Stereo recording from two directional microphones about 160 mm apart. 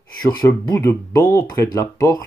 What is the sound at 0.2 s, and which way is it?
Speech, 25° left (ahead or behind).